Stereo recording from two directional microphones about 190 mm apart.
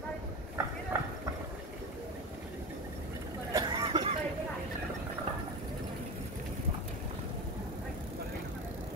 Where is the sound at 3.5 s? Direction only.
25° right (ahead or behind).